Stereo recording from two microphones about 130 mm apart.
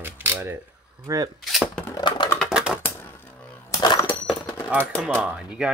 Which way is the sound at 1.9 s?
35° left (ahead or behind).